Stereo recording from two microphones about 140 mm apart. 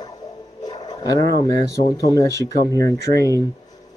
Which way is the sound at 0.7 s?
25° left (ahead or behind).